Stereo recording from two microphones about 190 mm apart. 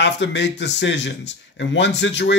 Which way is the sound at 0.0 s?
65° left (ahead or behind).